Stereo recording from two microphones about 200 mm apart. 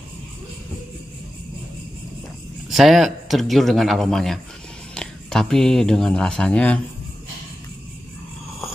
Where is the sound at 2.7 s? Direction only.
Centre (ahead or behind).